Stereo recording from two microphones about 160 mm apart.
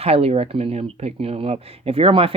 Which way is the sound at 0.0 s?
40° right (ahead or behind).